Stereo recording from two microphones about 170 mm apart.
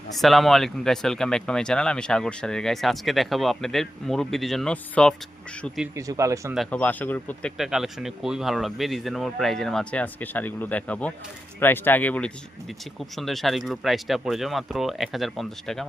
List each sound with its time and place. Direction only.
0.2 s speech: centre (ahead or behind)
5.9 s speech: 20° right (ahead or behind)
6.5 s speech: 5° left (ahead or behind)
7.5 s speech: 5° right (ahead or behind)